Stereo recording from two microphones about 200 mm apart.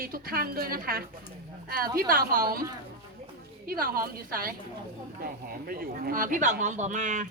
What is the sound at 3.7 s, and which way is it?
A woman's voice, 45° right (ahead or behind).